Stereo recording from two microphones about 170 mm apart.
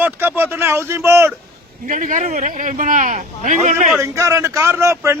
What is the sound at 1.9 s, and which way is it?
A man's voice, 50° right (ahead or behind).